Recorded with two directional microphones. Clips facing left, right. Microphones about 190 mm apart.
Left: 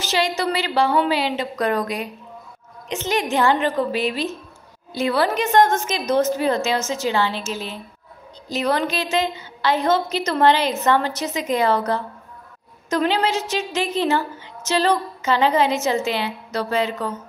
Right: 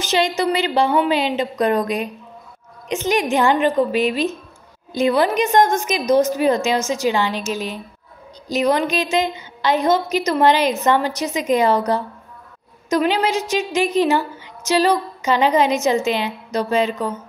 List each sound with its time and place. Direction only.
0.0 s a woman's voice: 20° right (ahead or behind)